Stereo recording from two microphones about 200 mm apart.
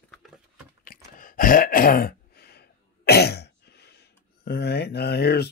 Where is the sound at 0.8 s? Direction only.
45° left (ahead or behind).